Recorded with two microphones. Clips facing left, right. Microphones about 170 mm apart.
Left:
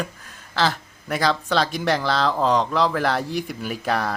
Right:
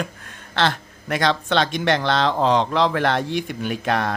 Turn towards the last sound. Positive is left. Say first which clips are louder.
# right 2 dB
turn(degrees=5)  # may be behind; listen again after turning